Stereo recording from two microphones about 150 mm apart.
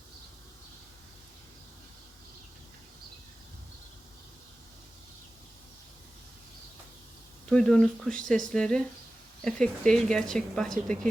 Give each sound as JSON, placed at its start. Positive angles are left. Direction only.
{"t": 7.5, "sound": "speech", "side_deg": 5}